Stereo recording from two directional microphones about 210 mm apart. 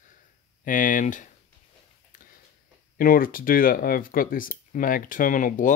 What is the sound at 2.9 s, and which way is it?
Speech, 45° left (ahead or behind).